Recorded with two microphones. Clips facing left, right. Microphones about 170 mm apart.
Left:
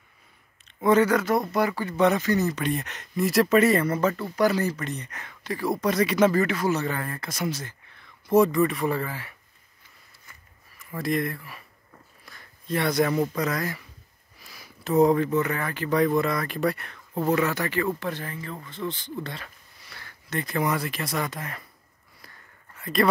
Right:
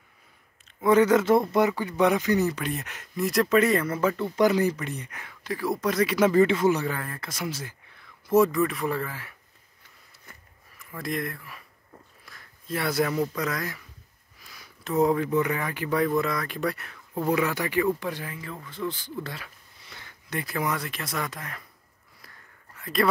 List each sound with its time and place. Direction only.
0.8 s speech: 15° right (ahead or behind); by 4.1 s centre (ahead or behind)
4.1 s speech: 20° right (ahead or behind)
6.3 s speech: 20° right (ahead or behind)
6.9 s speech: centre (ahead or behind)
10.8 s speech: centre (ahead or behind)
12.3 s a sound: centre (ahead or behind)
13.4 s speech: centre (ahead or behind)
16.2 s speech: centre (ahead or behind)
17.4 s speech: 10° right (ahead or behind)
22.8 s speech: centre (ahead or behind)